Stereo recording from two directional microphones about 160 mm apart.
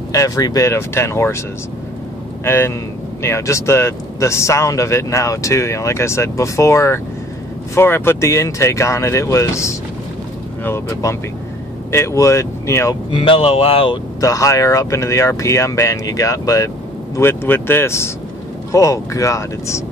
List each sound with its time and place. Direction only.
0.1 s speech: 20° left (ahead or behind)
2.4 s speech: 15° left (ahead or behind)
13.1 s speech: 30° left (ahead or behind)
14.2 s speech: 20° left (ahead or behind)